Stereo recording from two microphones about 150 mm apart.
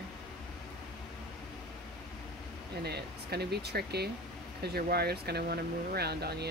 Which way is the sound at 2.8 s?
90° right.